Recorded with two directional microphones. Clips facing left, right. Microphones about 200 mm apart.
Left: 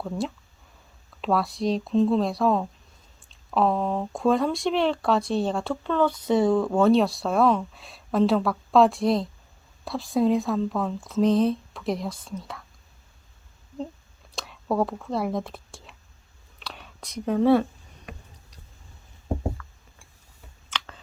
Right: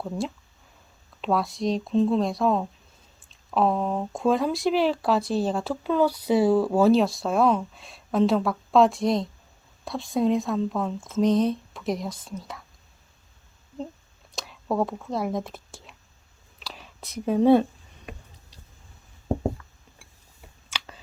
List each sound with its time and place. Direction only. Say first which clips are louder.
1.2 s speech: even; centre (ahead or behind)
14.3 s speech: left 1 dB; centre (ahead or behind)
16.6 s whispering: left 1 dB; centre (ahead or behind); by 18.1 s 20° right (ahead or behind)
19.6 s a sound: left 4 dB; 20° right (ahead or behind)
20.7 s computer keyboard: left 2 dB; 10° right (ahead or behind)